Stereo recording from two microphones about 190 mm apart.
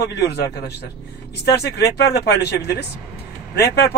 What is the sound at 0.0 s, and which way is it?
A man's voice, 60° left (ahead or behind).